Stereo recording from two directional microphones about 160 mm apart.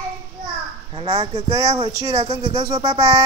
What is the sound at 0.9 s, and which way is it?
Speech, 30° right (ahead or behind).